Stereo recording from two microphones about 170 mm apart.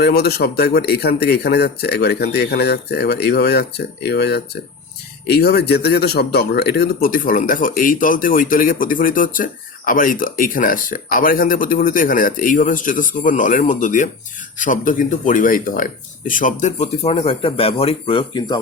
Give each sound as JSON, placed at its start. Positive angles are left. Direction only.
{"t": 0.0, "sound": "speech", "side_deg": 70}